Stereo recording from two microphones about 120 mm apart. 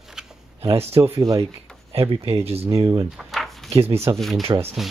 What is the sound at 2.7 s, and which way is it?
Speech, 30° right (ahead or behind).